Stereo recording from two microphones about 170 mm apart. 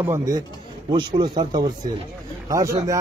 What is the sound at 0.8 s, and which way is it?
A man's voice, 25° right (ahead or behind).